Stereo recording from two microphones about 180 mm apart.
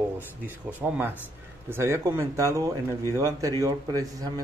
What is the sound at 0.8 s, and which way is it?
Speech, 10° right (ahead or behind).